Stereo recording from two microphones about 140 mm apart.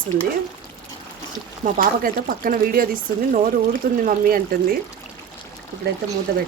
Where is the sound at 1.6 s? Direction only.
75° right (ahead or behind).